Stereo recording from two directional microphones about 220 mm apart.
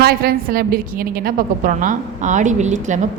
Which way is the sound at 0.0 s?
45° right (ahead or behind).